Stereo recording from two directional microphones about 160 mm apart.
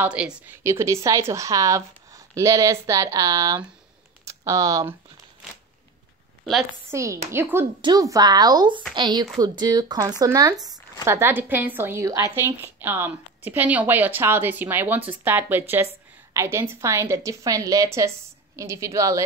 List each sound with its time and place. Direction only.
0.0 s a woman's voice: 5° right (ahead or behind)
0.7 s a woman's voice: 15° right (ahead or behind)
6.9 s a woman's voice: 20° right (ahead or behind)